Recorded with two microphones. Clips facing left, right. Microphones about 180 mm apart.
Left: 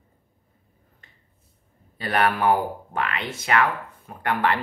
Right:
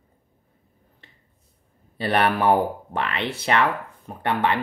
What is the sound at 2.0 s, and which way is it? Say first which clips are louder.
Speech: right 1 dB; 30° right (ahead or behind).